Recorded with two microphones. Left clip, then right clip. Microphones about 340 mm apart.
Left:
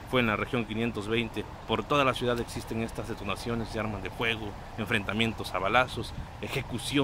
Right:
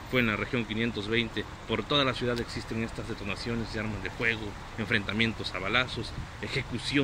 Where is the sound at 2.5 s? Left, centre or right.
Left.